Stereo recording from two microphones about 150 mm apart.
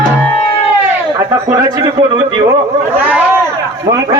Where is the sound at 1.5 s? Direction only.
25° right (ahead or behind).